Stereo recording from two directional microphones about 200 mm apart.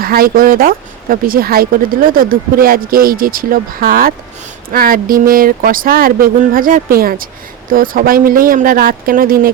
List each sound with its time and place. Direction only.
0.0 s speech: 45° right (ahead or behind)